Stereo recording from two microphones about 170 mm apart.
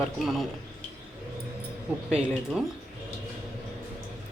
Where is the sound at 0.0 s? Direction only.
Centre (ahead or behind).